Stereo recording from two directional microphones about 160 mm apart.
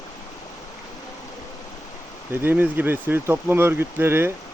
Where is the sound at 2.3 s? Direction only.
15° right (ahead or behind).